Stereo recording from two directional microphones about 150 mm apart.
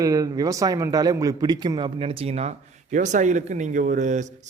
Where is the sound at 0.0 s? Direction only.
25° right (ahead or behind).